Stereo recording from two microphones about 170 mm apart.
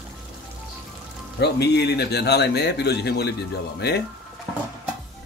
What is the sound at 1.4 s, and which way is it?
A man's voice, 75° left (ahead or behind).